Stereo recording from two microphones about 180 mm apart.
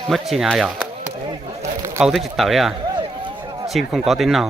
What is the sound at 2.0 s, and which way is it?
Speech, centre (ahead or behind).